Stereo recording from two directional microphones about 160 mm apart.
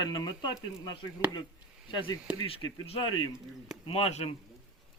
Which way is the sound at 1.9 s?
30° left (ahead or behind).